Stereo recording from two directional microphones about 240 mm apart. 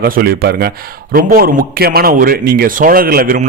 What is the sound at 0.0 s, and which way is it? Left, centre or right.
A man's voice, right.